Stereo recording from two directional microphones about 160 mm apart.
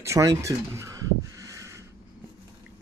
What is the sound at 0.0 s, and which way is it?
Speech, 20° right (ahead or behind).